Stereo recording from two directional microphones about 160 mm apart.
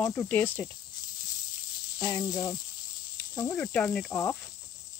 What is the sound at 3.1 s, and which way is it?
Cricket, 20° left (ahead or behind).